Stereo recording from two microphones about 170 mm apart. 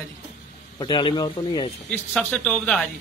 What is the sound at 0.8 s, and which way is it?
Speech, 30° left (ahead or behind).